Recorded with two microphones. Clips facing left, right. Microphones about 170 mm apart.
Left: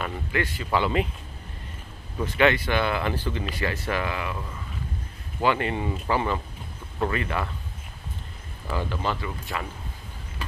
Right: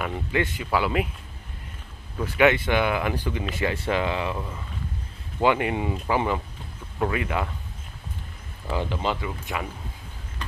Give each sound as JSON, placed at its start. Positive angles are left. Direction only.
{"t": 0.0, "sound": "speech", "side_deg": -20}
{"t": 0.7, "sound": "speech", "side_deg": -5}
{"t": 2.2, "sound": "speech", "side_deg": -10}
{"t": 3.5, "sound": "speech", "side_deg": -25}
{"t": 5.4, "sound": "speech", "side_deg": -15}
{"t": 8.6, "sound": "speech", "side_deg": -15}